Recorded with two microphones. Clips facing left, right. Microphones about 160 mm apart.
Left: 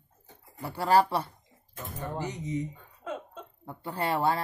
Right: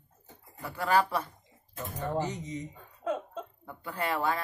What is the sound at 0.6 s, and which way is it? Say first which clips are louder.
Speech: left 3 dB; 35° left (ahead or behind).